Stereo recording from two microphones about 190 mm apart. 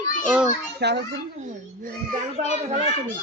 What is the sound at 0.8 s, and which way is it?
Speech, 60° right (ahead or behind).